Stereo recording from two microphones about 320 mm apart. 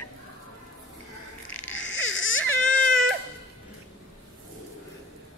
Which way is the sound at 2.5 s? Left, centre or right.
Centre.